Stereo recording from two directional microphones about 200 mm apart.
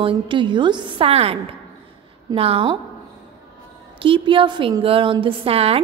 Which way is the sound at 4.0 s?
25° right (ahead or behind).